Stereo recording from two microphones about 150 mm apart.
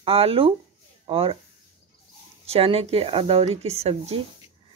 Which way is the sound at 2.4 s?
40° right (ahead or behind).